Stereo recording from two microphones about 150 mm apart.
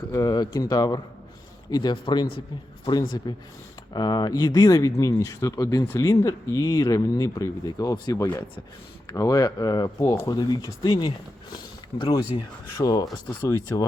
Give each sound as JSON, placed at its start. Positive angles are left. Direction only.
{"t": 0.1, "sound": "speech", "side_deg": 25}
{"t": 3.3, "sound": "speech", "side_deg": 25}